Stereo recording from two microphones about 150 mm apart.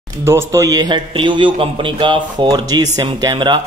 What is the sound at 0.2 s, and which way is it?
A man's voice, 15° right (ahead or behind).